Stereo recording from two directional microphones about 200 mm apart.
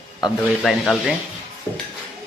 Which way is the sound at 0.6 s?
Centre (ahead or behind).